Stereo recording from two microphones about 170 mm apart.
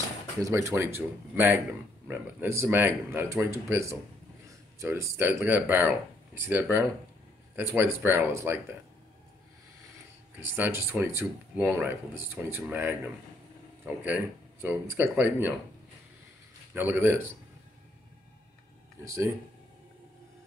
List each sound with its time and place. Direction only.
0.4 s speech: 15° right (ahead or behind)
10.4 s speech: 10° right (ahead or behind)
16.7 s speech: 15° right (ahead or behind)
19.0 s speech: 20° right (ahead or behind)